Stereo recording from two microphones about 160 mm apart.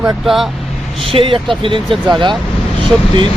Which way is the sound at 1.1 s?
35° right (ahead or behind).